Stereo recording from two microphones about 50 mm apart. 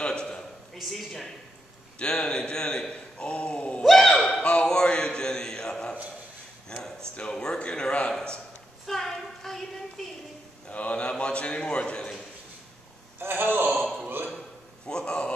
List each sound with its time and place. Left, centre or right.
0.0 s a sound: centre
0.7 s speech: centre
2.0 s speech: left
3.8 s a sound: centre
4.4 s speech: left
10.7 s speech: left
13.2 s a man's voice: right
14.9 s speech: centre